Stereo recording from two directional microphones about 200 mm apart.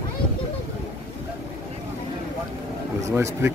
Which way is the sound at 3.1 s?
10° right (ahead or behind).